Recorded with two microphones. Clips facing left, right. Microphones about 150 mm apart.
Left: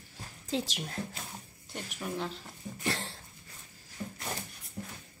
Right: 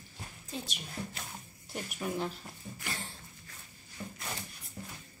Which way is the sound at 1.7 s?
5° right (ahead or behind).